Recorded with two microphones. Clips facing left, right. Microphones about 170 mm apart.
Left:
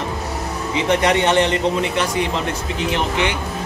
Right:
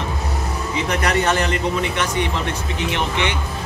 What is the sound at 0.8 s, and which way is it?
A man's voice, 25° left (ahead or behind).